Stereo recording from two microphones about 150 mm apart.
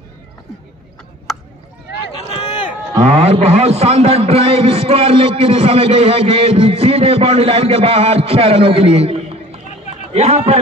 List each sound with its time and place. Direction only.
2.4 s run: 30° left (ahead or behind)
3.0 s a man's voice: 40° right (ahead or behind)